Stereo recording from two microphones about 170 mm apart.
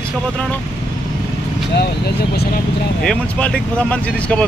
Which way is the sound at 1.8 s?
70° left (ahead or behind).